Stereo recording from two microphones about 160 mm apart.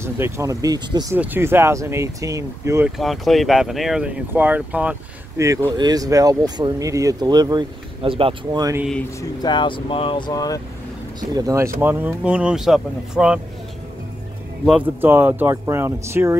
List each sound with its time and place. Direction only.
0.0 s speech: 15° right (ahead or behind)
1.1 s speech: 10° right (ahead or behind)
3.0 s speech: centre (ahead or behind); by 8.6 s 35° right (ahead or behind)
9.2 s speech: 25° left (ahead or behind)
11.1 s speech: 25° right (ahead or behind); by 13.4 s 5° right (ahead or behind)
14.6 s speech: 10° right (ahead or behind)